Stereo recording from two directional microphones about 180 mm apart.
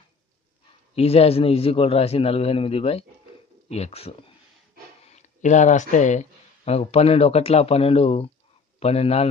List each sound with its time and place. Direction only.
0.9 s a man's voice: 35° left (ahead or behind)